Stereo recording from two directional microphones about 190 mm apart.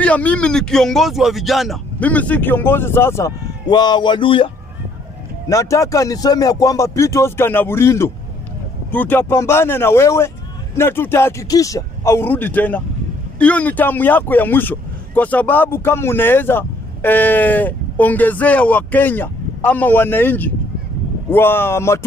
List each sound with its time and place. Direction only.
0.0 s speech: 5° left (ahead or behind); by 4.5 s 25° left (ahead or behind)
5.5 s speech: 15° left (ahead or behind)